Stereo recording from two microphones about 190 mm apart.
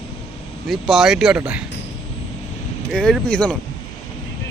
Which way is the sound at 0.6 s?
Centre (ahead or behind).